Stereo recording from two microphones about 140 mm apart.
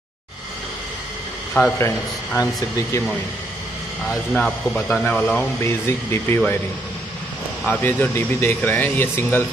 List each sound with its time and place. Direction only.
1.5 s speech: 10° left (ahead or behind)
2.3 s speech: 25° left (ahead or behind)
4.3 s speech: 5° left (ahead or behind)
7.6 s speech: 10° left (ahead or behind)